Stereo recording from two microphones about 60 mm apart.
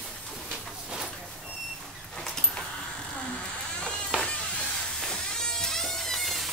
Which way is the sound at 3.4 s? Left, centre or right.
Centre.